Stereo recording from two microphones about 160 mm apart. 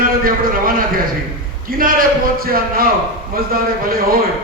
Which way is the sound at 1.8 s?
60° right (ahead or behind).